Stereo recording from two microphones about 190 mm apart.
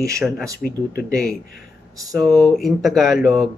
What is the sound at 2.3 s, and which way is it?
Speech, 10° left (ahead or behind).